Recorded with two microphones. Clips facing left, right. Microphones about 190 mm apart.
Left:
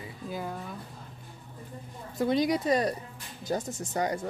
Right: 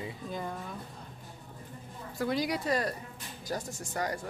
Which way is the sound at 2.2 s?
20° left (ahead or behind).